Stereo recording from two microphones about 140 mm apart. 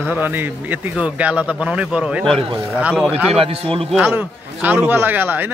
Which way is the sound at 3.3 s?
45° right (ahead or behind).